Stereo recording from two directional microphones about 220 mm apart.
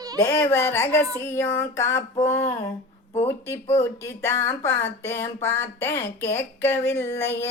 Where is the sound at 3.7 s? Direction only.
10° left (ahead or behind).